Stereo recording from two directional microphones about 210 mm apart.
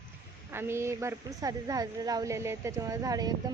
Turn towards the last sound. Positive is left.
turn(degrees=-15)  # may be behind; listen again after turning